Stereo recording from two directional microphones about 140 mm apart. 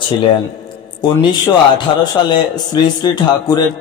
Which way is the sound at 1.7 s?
35° left (ahead or behind).